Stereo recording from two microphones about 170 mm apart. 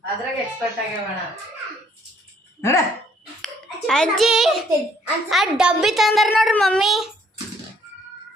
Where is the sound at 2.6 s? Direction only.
15° left (ahead or behind).